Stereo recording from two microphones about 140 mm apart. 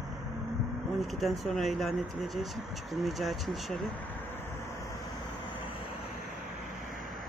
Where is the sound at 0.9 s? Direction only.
Centre (ahead or behind).